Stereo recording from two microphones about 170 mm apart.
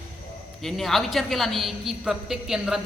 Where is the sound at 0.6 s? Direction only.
Centre (ahead or behind).